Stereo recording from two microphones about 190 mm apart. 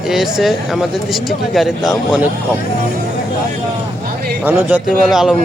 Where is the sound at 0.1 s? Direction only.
Centre (ahead or behind).